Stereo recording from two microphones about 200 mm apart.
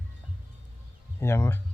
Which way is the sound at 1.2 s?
15° left (ahead or behind).